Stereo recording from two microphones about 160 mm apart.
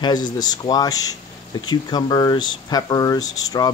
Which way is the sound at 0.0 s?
25° left (ahead or behind).